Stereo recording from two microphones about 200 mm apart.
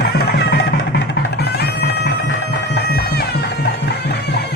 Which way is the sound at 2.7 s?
55° left (ahead or behind).